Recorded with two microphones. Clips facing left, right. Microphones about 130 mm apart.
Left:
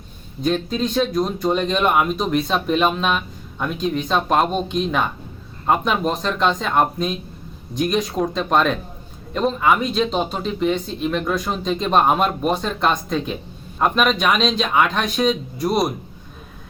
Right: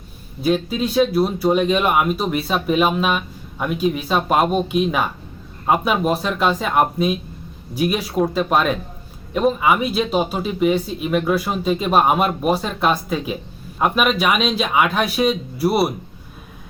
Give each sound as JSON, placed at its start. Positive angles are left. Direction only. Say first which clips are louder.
{"t": 0.4, "sound": "speech", "louder": "right 1 dB", "side_deg": -10}